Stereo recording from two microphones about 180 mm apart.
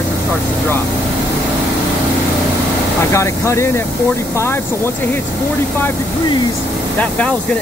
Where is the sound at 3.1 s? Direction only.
15° left (ahead or behind).